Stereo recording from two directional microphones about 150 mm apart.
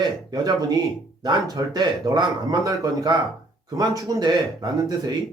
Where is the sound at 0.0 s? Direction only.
30° right (ahead or behind).